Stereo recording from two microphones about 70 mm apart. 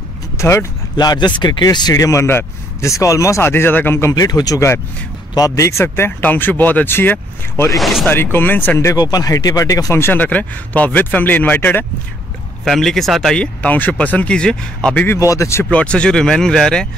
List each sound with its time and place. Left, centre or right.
0.4 s speech: left
0.9 s speech: left
2.0 s speech: left
4.1 s speech: left
5.6 s speech: left
6.2 s speech: left
7.7 s speech: centre
8.1 s speech: left
8.9 s speech: left
9.9 s speech: left
12.6 s speech: centre
13.4 s speech: left
15.1 s speech: left
15.7 s speech: centre